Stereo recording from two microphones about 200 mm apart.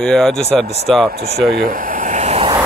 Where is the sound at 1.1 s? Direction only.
50° right (ahead or behind).